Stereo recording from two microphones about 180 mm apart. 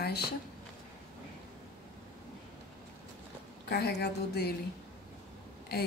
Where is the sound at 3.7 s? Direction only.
65° left (ahead or behind).